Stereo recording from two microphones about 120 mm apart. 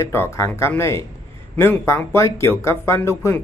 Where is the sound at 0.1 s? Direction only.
20° left (ahead or behind).